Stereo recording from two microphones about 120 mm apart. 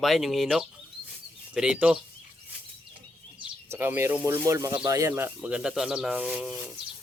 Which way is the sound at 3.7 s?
20° right (ahead or behind).